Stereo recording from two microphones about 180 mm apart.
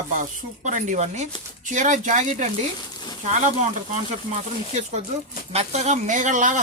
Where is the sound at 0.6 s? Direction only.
45° right (ahead or behind).